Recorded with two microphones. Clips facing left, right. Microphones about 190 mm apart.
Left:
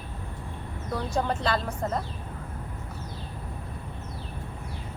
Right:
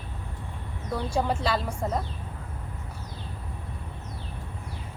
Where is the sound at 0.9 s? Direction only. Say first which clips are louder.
Right 1 dB; 10° right (ahead or behind).